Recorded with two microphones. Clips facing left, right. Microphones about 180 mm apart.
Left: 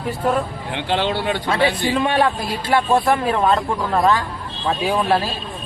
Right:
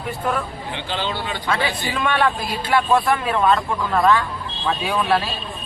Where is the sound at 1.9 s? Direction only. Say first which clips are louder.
Left 3 dB; 35° left (ahead or behind).